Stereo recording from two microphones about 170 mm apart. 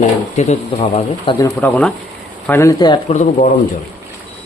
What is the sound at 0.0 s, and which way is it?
Speech, 45° left (ahead or behind).